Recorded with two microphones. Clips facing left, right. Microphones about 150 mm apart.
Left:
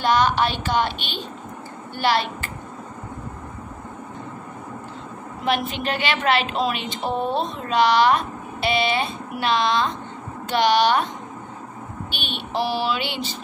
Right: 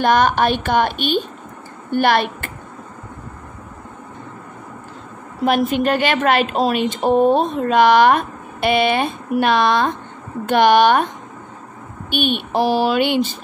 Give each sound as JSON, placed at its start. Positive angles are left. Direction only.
{"t": 0.0, "sound": "a woman's voice", "side_deg": -50}
{"t": 5.4, "sound": "a woman's voice", "side_deg": -45}
{"t": 12.1, "sound": "a woman's voice", "side_deg": -50}